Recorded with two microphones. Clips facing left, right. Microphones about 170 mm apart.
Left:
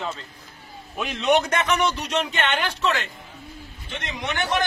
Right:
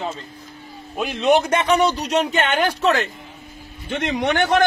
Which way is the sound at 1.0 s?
35° right (ahead or behind).